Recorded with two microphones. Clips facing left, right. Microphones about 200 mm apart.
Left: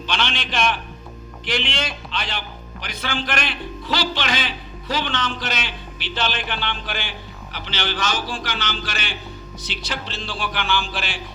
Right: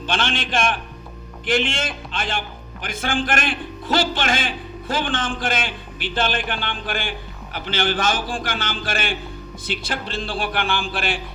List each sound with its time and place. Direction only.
0.1 s a man's voice: 50° right (ahead or behind)